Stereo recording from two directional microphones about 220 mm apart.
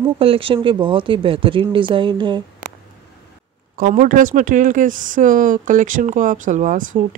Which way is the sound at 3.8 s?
35° right (ahead or behind).